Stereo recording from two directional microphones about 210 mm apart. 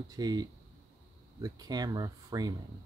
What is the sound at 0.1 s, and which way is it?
Speech, 20° right (ahead or behind).